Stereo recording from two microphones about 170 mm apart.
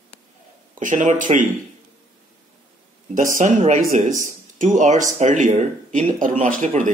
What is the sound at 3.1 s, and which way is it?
Speech, 50° right (ahead or behind).